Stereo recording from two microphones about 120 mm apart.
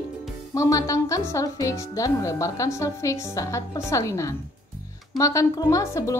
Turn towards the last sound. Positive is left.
turn(degrees=25)  # may be behind; listen again after turning